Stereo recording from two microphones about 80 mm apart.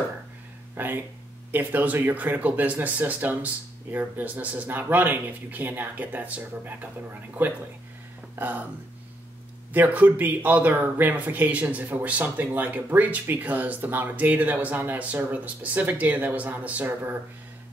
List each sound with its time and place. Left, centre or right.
0.7 s speech: right
9.7 s speech: centre